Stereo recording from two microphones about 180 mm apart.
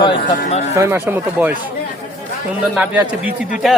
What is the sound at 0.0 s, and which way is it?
Speech, 30° left (ahead or behind).